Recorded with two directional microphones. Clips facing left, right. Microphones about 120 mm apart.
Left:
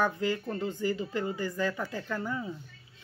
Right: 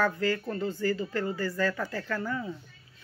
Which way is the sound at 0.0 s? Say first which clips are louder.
Right 1 dB; 15° left (ahead or behind).